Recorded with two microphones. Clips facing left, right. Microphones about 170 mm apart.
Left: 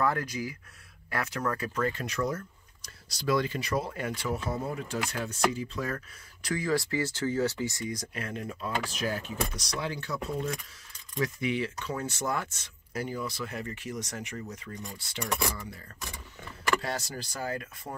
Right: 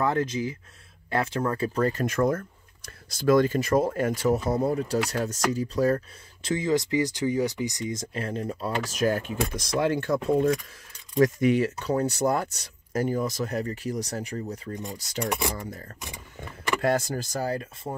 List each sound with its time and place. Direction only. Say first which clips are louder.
0.0 s speech: right 4 dB; 20° right (ahead or behind)
6.5 s speech: right 5 dB; 20° right (ahead or behind); by 17.6 s 35° right (ahead or behind)
17.9 s speech: right 6 dB; 25° right (ahead or behind)